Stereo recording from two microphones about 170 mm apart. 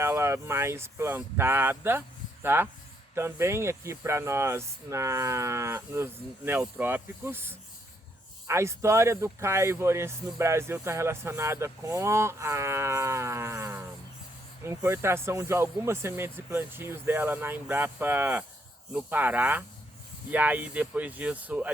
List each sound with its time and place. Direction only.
0.0 s speech: 15° right (ahead or behind)